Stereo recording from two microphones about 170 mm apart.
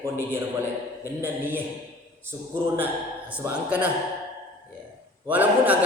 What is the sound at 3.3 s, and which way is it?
Speech, 10° right (ahead or behind).